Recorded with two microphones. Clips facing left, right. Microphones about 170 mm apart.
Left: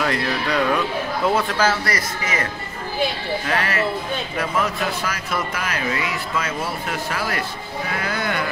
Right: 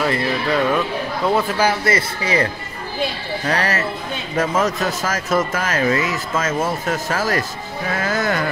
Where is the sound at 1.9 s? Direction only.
30° right (ahead or behind).